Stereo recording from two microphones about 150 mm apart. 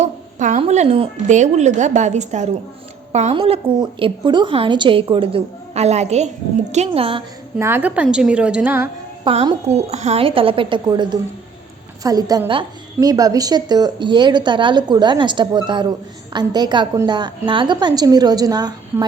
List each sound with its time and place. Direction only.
0.0 s a sound: 55° right (ahead or behind)
0.6 s a woman's voice: 45° right (ahead or behind)
1.3 s a woman's voice: 50° right (ahead or behind)
3.3 s a woman's voice: 35° right (ahead or behind)
7.6 s a woman's voice: 10° right (ahead or behind)
9.2 s a woman's voice: 35° right (ahead or behind)